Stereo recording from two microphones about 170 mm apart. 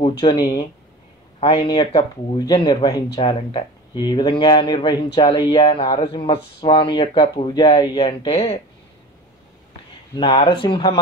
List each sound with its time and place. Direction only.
0.0 s speech: 30° left (ahead or behind)
10.1 s speech: 30° left (ahead or behind)